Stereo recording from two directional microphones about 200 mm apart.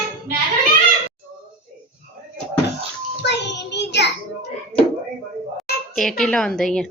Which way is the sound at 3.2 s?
60° left (ahead or behind).